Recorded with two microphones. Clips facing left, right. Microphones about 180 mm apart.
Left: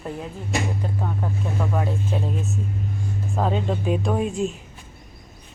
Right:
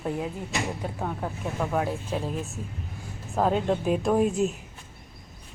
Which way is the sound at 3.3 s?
5° right (ahead or behind).